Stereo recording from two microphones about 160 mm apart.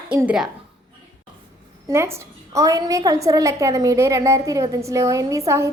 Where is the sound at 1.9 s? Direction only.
15° right (ahead or behind).